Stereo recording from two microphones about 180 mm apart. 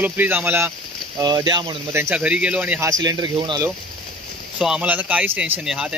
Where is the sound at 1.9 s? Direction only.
10° right (ahead or behind).